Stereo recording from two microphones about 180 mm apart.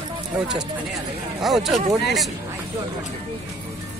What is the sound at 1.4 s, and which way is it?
Speech, centre (ahead or behind).